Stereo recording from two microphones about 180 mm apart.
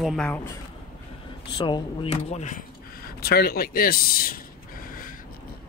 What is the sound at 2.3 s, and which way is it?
Speech, 40° left (ahead or behind).